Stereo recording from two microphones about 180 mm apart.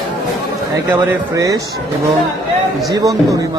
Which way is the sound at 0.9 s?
15° right (ahead or behind).